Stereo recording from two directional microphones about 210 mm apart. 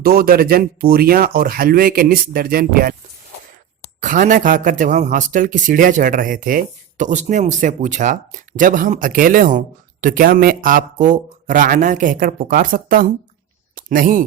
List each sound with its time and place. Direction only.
0.0 s speech: 45° right (ahead or behind)
4.0 s speech: 40° right (ahead or behind)